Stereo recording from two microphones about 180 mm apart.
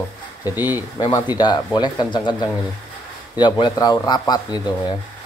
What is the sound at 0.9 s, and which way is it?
Speech, 20° left (ahead or behind).